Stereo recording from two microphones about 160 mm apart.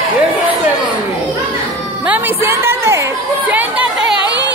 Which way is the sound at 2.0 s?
10° right (ahead or behind).